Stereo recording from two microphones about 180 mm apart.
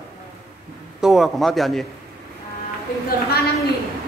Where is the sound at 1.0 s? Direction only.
Centre (ahead or behind).